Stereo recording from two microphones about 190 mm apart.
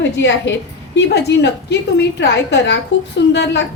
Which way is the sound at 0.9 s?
60° left (ahead or behind).